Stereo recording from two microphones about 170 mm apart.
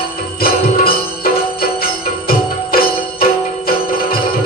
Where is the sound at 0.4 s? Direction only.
60° left (ahead or behind).